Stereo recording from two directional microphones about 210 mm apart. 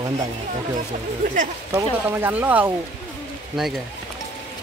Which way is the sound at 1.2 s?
40° right (ahead or behind).